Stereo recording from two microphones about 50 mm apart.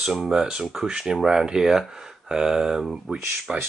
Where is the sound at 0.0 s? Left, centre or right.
Centre.